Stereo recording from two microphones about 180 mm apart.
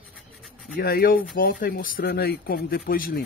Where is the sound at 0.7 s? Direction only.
55° left (ahead or behind).